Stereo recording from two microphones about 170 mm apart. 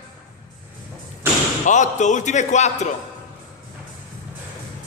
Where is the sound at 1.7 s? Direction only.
45° left (ahead or behind).